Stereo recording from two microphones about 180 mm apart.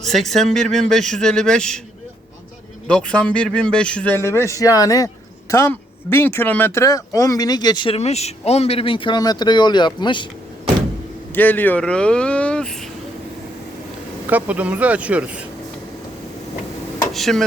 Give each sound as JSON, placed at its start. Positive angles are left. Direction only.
{"t": 0.0, "sound": "speech", "side_deg": 0}
{"t": 2.8, "sound": "a man's voice", "side_deg": 5}
{"t": 11.3, "sound": "speech", "side_deg": 10}
{"t": 14.3, "sound": "speech", "side_deg": -10}
{"t": 17.1, "sound": "speech", "side_deg": 0}